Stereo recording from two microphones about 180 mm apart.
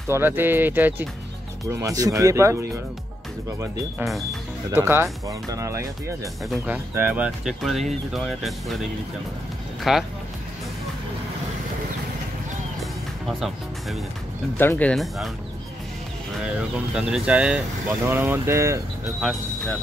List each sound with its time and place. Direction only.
0.1 s speech: 10° right (ahead or behind)
4.0 s speech: centre (ahead or behind)
4.7 s speech: 15° right (ahead or behind)
9.9 s speech: centre (ahead or behind)
12.8 s music: centre (ahead or behind)
14.6 s speech: 10° left (ahead or behind)
16.5 s speech: 5° right (ahead or behind)